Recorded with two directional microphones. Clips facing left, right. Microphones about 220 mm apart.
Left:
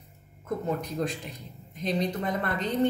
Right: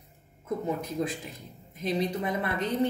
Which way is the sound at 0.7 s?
5° right (ahead or behind).